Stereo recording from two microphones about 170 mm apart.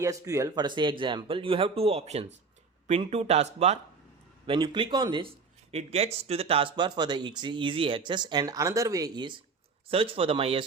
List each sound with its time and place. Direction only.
0.0 s speech: 20° right (ahead or behind); by 3.8 s 40° right (ahead or behind)
4.4 s speech: 30° right (ahead or behind)
5.7 s speech: 40° right (ahead or behind)